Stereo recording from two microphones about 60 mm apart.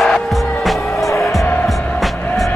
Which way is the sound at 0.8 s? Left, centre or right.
Left.